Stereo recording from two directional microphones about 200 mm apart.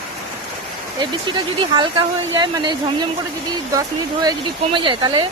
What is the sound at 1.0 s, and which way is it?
Speech, 25° right (ahead or behind).